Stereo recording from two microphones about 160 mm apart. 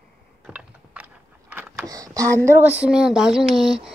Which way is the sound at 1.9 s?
20° right (ahead or behind).